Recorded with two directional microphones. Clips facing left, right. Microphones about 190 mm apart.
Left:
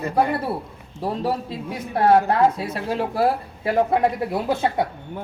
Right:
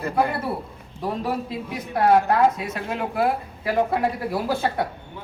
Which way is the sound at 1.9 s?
30° left (ahead or behind).